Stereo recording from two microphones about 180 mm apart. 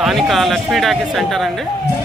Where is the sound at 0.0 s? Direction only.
Centre (ahead or behind).